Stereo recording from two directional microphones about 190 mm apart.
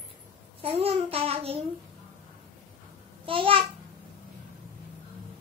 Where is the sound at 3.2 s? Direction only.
30° right (ahead or behind).